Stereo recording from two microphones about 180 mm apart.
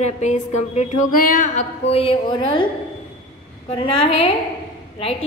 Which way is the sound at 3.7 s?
30° left (ahead or behind).